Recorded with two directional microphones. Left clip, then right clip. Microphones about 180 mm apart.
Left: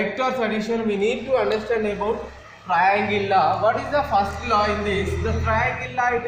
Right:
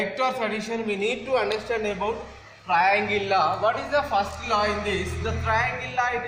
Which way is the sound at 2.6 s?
25° right (ahead or behind).